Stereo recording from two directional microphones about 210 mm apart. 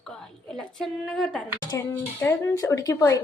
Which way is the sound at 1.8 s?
15° left (ahead or behind).